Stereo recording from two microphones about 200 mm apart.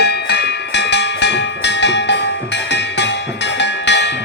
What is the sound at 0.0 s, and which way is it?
Music, 55° left (ahead or behind).